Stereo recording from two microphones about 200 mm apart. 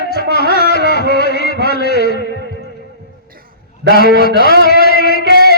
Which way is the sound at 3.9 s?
45° left (ahead or behind).